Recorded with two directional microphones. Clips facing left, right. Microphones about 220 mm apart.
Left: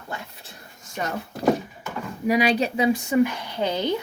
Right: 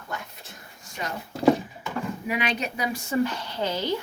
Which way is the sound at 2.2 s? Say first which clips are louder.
Left 11 dB; 35° left (ahead or behind).